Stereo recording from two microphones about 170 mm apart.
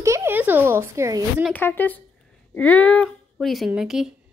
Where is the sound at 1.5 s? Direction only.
10° left (ahead or behind).